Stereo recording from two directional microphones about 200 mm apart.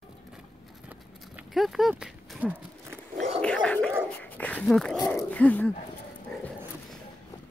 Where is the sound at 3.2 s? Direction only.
30° right (ahead or behind).